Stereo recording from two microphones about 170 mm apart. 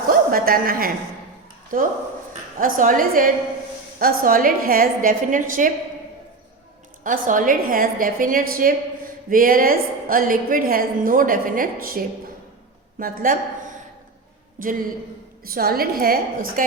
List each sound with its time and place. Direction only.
0.1 s a woman's voice: 60° right (ahead or behind)
7.0 s a woman's voice: 50° right (ahead or behind)